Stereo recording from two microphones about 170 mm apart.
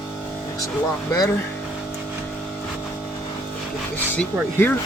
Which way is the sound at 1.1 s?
20° left (ahead or behind).